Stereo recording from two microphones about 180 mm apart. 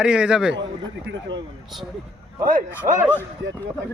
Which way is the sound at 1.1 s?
75° right (ahead or behind).